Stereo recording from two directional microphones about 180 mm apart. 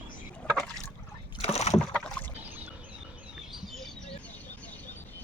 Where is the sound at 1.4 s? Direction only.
35° left (ahead or behind).